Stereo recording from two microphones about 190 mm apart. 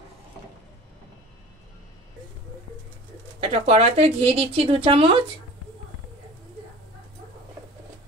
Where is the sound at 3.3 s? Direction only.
30° right (ahead or behind).